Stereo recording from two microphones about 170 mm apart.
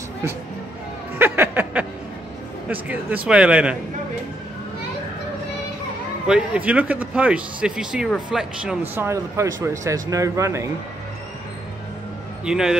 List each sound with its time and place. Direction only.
1.1 s a sound: 10° right (ahead or behind)
2.7 s speech: 10° right (ahead or behind)
6.2 s speech: 5° right (ahead or behind)
12.4 s speech: 5° right (ahead or behind)